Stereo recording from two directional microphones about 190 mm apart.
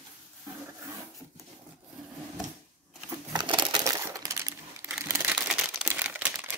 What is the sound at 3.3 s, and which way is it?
Coin, 25° right (ahead or behind).